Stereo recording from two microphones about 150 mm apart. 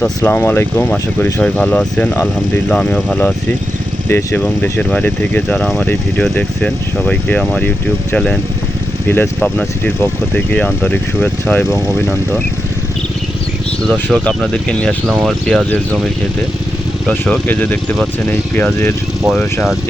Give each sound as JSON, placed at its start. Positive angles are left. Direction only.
{"t": 0.2, "sound": "speech", "side_deg": 15}
{"t": 13.9, "sound": "speech", "side_deg": 5}
{"t": 17.1, "sound": "speech", "side_deg": 5}